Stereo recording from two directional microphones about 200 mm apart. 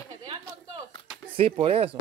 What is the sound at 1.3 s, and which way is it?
Speech, 30° right (ahead or behind).